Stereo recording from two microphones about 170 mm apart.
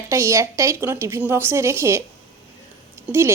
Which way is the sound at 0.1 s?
15° right (ahead or behind).